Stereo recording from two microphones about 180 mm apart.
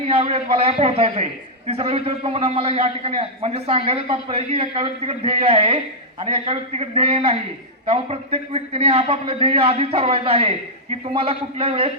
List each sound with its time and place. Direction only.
0.1 s a man's voice: 35° right (ahead or behind)